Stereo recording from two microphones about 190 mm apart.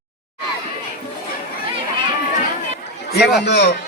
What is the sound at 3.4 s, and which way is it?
Speech, 60° left (ahead or behind).